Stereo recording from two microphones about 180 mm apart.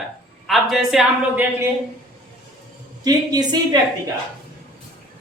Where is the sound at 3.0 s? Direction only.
20° right (ahead or behind).